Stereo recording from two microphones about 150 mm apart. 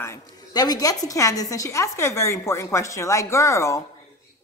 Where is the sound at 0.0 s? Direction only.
20° left (ahead or behind).